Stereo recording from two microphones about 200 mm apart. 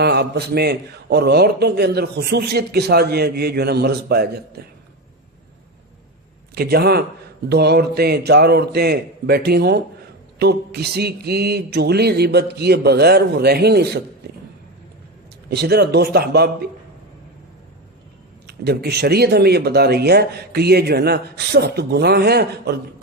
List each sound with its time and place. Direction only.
0.0 s a man's voice: 55° right (ahead or behind)
6.5 s a man's voice: 50° right (ahead or behind)
14.2 s a sound: 55° right (ahead or behind)
15.4 s a man's voice: 55° right (ahead or behind)
18.4 s a man's voice: 55° right (ahead or behind)